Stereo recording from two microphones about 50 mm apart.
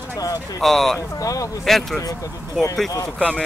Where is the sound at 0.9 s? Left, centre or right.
Left.